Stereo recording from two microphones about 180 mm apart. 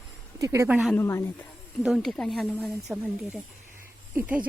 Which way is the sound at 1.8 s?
Centre (ahead or behind).